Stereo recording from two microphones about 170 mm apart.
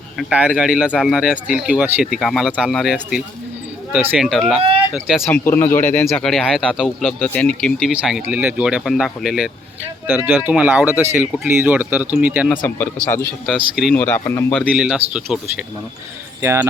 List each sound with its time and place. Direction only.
0.2 s speech: 5° right (ahead or behind)
5.2 s speech: 15° left (ahead or behind); by 12.5 s 10° right (ahead or behind)
12.5 s speech: 10° left (ahead or behind)
13.9 s speech: 10° left (ahead or behind)
14.7 s speech: 5° right (ahead or behind)
16.4 s speech: 15° right (ahead or behind)